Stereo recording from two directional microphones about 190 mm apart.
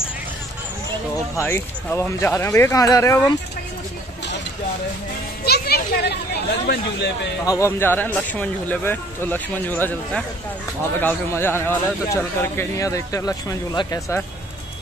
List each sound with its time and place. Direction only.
1.1 s a man's voice: 15° left (ahead or behind)
5.4 s speech: 55° left (ahead or behind)
7.4 s a man's voice: 15° left (ahead or behind)